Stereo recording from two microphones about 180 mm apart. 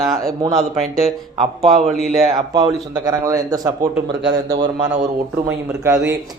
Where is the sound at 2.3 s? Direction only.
25° right (ahead or behind).